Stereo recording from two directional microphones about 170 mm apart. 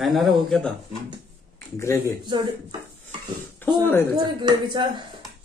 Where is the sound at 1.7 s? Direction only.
15° left (ahead or behind).